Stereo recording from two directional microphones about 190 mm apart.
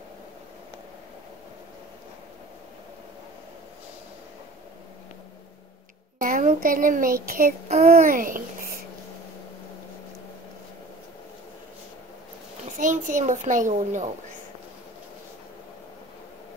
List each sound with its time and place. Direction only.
6.1 s a woman's voice: 45° right (ahead or behind)
7.6 s a child's voice: 35° right (ahead or behind)
7.9 s a woman's voice: 45° right (ahead or behind)
12.7 s a child's voice: 40° right (ahead or behind)